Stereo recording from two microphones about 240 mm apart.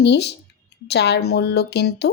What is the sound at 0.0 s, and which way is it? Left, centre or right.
Speech, left.